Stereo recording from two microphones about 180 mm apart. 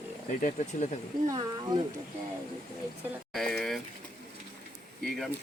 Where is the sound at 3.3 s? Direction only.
Centre (ahead or behind).